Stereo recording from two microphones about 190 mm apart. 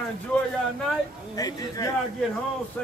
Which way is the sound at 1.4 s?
20° left (ahead or behind).